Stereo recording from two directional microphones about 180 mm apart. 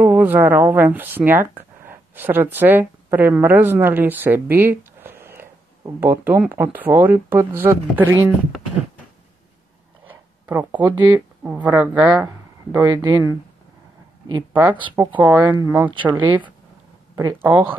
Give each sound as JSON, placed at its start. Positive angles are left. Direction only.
{"t": 0.0, "sound": "speech", "side_deg": -10}
{"t": 10.0, "sound": "a sound", "side_deg": -10}
{"t": 11.1, "sound": "speech", "side_deg": -10}
{"t": 14.5, "sound": "a woman's voice", "side_deg": -10}
{"t": 15.9, "sound": "speech", "side_deg": -30}
{"t": 16.2, "sound": "speech", "side_deg": -10}
{"t": 17.1, "sound": "speech", "side_deg": -25}
{"t": 17.4, "sound": "speech", "side_deg": -10}